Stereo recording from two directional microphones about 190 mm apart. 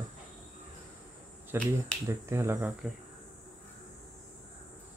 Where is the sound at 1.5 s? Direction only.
10° right (ahead or behind).